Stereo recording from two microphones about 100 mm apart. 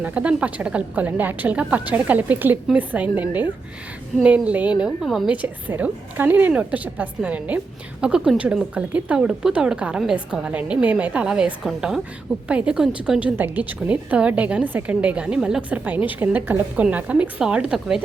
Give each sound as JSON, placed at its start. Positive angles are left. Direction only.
{"t": 0.0, "sound": "a woman's voice", "side_deg": -15}
{"t": 4.8, "sound": "a woman's voice", "side_deg": -5}
{"t": 5.3, "sound": "a woman's voice", "side_deg": -15}